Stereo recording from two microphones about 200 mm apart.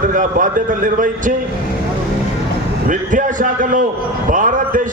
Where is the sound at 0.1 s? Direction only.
40° right (ahead or behind).